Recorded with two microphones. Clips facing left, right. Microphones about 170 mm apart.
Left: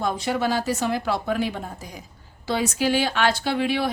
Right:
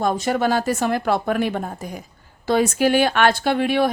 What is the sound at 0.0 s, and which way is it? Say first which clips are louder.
A woman's voice: right 4 dB; 45° right (ahead or behind).